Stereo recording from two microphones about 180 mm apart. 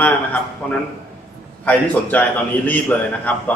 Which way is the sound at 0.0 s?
10° left (ahead or behind).